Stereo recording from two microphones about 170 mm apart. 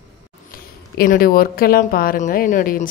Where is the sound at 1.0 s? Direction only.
60° left (ahead or behind).